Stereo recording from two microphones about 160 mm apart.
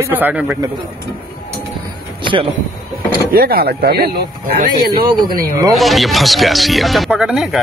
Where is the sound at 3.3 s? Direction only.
65° right (ahead or behind).